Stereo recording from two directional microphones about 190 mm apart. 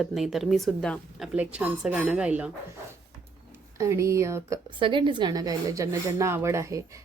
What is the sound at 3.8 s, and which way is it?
Speech, 15° right (ahead or behind).